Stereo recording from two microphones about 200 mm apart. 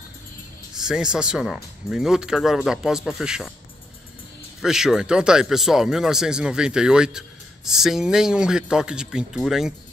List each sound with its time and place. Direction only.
0.7 s speech: 5° right (ahead or behind)
4.6 s speech: centre (ahead or behind)